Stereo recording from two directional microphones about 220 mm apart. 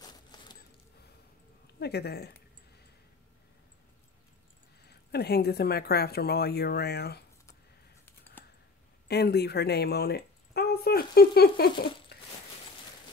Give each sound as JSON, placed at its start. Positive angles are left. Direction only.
{"t": 0.0, "sound": "a sound", "side_deg": 20}
{"t": 1.8, "sound": "speech", "side_deg": 45}
{"t": 4.8, "sound": "speech", "side_deg": 45}
{"t": 8.0, "sound": "typing", "side_deg": 10}
{"t": 9.0, "sound": "speech", "side_deg": 45}
{"t": 12.1, "sound": "a sound", "side_deg": 45}